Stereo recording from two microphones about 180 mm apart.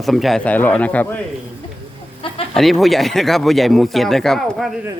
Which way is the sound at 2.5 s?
Centre (ahead or behind).